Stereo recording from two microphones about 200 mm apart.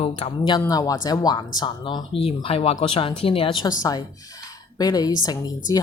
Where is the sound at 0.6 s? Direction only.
20° left (ahead or behind).